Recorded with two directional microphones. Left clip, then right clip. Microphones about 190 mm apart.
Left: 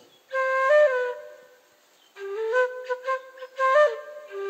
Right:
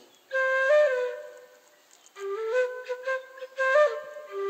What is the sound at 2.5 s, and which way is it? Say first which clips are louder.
Flute: left 4 dB; 20° left (ahead or behind).